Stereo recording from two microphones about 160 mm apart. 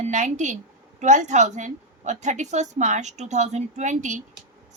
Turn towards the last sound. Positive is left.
turn(degrees=-50)  # may be behind; listen again after turning